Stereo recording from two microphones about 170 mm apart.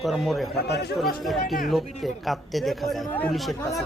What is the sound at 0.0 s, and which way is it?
Speech, centre (ahead or behind).